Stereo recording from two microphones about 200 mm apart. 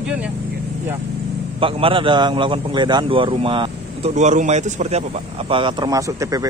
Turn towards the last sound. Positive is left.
turn(degrees=-15)  # may be behind; listen again after turning